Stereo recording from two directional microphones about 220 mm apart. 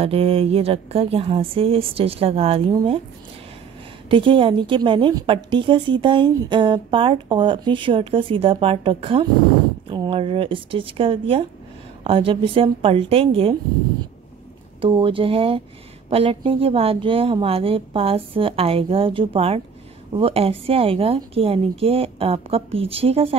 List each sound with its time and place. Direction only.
0.0 s a woman's voice: 25° right (ahead or behind)
4.1 s a woman's voice: 25° right (ahead or behind)
14.8 s a woman's voice: 25° right (ahead or behind)